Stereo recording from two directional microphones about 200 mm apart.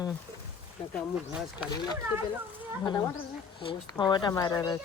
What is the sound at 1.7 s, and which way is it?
Speech, 20° left (ahead or behind).